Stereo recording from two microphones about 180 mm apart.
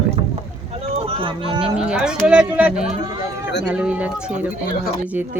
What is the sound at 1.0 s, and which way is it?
Speech, 30° right (ahead or behind).